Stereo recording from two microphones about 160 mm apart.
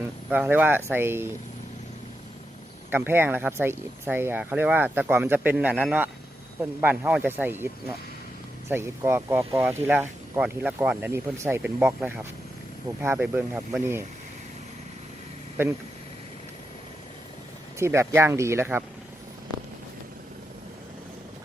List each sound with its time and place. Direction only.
0.0 s speech: 10° right (ahead or behind)
2.9 s speech: 15° right (ahead or behind)
15.6 s speech: 15° right (ahead or behind)
17.7 s speech: 15° right (ahead or behind)